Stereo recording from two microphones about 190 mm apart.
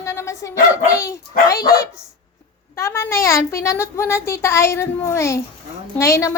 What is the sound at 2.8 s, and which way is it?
A woman's voice, 15° left (ahead or behind).